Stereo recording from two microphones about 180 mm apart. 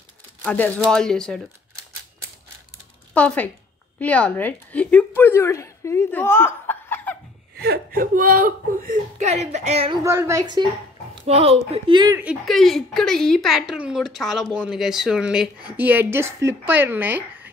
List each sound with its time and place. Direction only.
0.4 s a woman's voice: 10° left (ahead or behind)
3.2 s a woman's voice: 5° left (ahead or behind)
7.5 s speech: 60° right (ahead or behind); by 9.9 s 35° right (ahead or behind)
10.0 s speech: 15° right (ahead or behind)
12.2 s a woman's voice: 5° right (ahead or behind)